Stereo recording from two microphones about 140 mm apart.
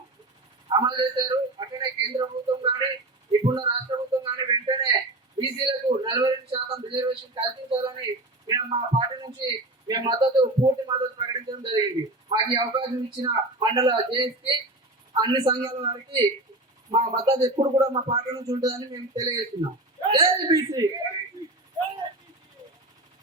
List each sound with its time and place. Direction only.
0.7 s speech: 30° right (ahead or behind)